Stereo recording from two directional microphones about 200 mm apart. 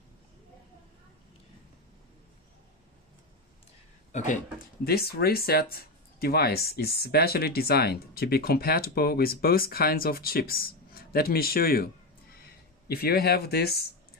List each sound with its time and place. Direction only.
4.1 s speech: 40° left (ahead or behind)
4.8 s speech: 50° left (ahead or behind)